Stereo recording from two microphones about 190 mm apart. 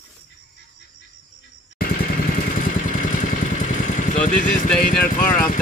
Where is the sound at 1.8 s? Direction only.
50° left (ahead or behind).